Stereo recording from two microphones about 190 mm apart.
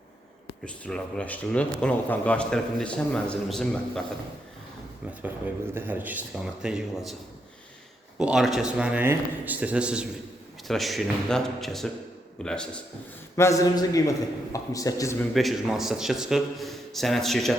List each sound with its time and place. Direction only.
0.6 s speech: 5° left (ahead or behind)
5.7 s speech: 10° right (ahead or behind)
8.2 s speech: centre (ahead or behind)
13.3 s a man's voice: 15° left (ahead or behind)
15.3 s speech: centre (ahead or behind)